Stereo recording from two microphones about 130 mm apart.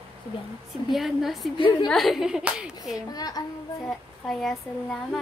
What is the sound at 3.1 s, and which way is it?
Speech, 30° left (ahead or behind).